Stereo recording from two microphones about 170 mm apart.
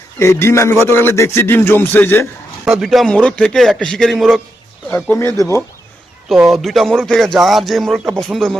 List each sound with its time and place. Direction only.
0.2 s speech: 15° left (ahead or behind)
2.6 s a man's voice: centre (ahead or behind); by 5.6 s 15° left (ahead or behind)
6.5 s a man's voice: centre (ahead or behind)